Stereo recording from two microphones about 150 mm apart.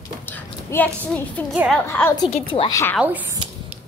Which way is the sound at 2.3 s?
40° left (ahead or behind).